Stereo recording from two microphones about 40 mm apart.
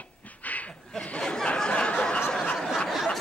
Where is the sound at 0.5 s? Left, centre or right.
Left.